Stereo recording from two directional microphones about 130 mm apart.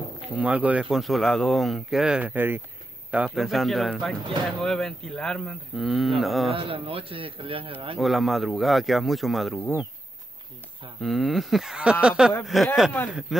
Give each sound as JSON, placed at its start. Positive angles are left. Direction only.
{"t": 0.4, "sound": "speech", "side_deg": -10}
{"t": 3.3, "sound": "speech", "side_deg": 0}
{"t": 6.5, "sound": "a man's voice", "side_deg": -45}
{"t": 8.0, "sound": "speech", "side_deg": 0}
{"t": 11.0, "sound": "speech", "side_deg": 0}